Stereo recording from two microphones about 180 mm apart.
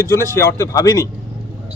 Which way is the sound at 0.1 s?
15° left (ahead or behind).